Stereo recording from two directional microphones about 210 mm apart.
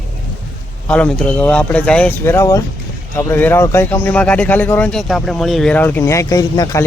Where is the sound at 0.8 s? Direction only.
5° left (ahead or behind).